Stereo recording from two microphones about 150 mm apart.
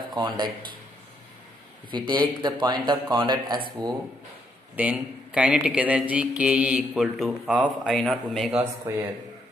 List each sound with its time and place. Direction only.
0.1 s speech: 30° right (ahead or behind)
1.9 s speech: 30° right (ahead or behind)
4.7 s speech: 10° right (ahead or behind)
8.9 s a man's voice: 20° right (ahead or behind)